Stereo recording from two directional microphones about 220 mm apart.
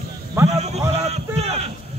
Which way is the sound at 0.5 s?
30° right (ahead or behind).